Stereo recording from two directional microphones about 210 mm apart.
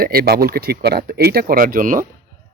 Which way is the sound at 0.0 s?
45° right (ahead or behind).